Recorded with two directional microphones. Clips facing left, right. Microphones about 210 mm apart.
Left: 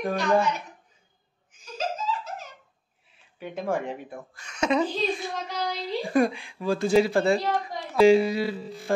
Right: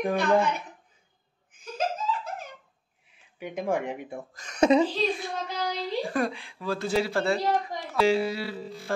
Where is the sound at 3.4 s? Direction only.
15° right (ahead or behind).